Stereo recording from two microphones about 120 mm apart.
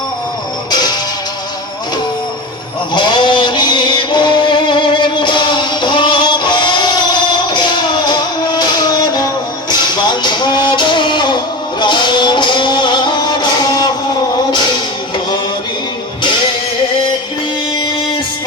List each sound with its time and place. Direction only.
0.7 s music: 35° left (ahead or behind)
2.9 s music: 40° left (ahead or behind)